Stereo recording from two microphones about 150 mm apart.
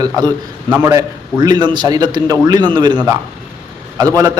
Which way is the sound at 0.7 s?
15° right (ahead or behind).